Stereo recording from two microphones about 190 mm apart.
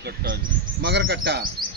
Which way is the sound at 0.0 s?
50° right (ahead or behind).